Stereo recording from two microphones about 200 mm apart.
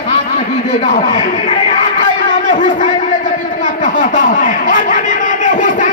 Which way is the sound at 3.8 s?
40° left (ahead or behind).